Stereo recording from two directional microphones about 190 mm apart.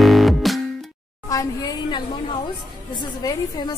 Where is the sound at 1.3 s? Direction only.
20° left (ahead or behind).